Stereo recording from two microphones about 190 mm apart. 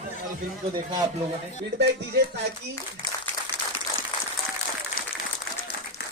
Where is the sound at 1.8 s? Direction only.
60° right (ahead or behind).